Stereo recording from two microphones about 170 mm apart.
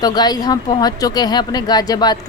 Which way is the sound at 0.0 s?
25° left (ahead or behind).